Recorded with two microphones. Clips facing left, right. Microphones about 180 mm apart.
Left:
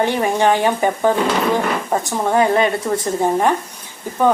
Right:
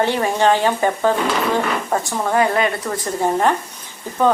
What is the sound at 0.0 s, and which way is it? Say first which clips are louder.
A woman's voice: left 1 dB; 15° left (ahead or behind).